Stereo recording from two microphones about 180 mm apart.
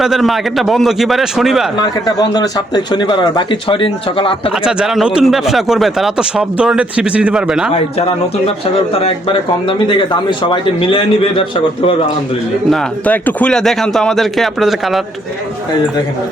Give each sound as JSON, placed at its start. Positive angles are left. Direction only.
{"t": 0.0, "sound": "speech", "side_deg": 0}
{"t": 1.8, "sound": "a man's voice", "side_deg": 20}
{"t": 4.5, "sound": "speech", "side_deg": -5}
{"t": 7.7, "sound": "a man's voice", "side_deg": 30}
{"t": 12.7, "sound": "speech", "side_deg": 5}